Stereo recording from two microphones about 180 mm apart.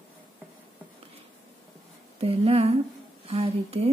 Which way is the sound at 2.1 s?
30° right (ahead or behind).